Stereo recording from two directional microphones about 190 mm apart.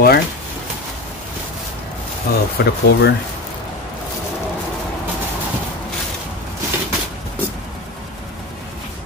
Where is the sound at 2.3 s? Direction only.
50° left (ahead or behind).